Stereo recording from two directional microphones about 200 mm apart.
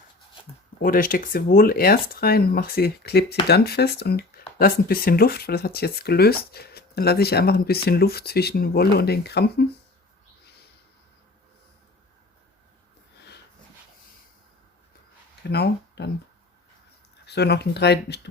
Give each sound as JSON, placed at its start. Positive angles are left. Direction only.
{"t": 0.8, "sound": "speech", "side_deg": 45}
{"t": 15.4, "sound": "speech", "side_deg": 55}
{"t": 17.2, "sound": "speech", "side_deg": 55}